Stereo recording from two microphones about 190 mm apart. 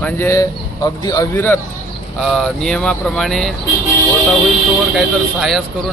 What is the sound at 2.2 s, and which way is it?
Speech, centre (ahead or behind).